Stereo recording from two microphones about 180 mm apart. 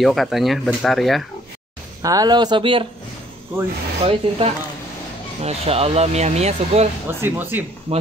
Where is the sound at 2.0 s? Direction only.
20° right (ahead or behind).